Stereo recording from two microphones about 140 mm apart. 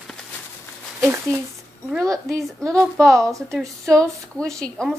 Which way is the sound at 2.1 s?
5° left (ahead or behind).